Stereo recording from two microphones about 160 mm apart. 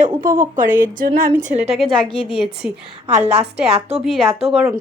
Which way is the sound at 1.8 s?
Centre (ahead or behind).